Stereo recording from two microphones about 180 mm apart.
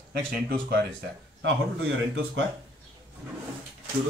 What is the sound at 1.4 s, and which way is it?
Speech, 90° right.